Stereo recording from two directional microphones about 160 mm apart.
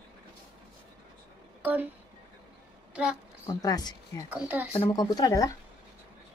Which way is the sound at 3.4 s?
25° left (ahead or behind).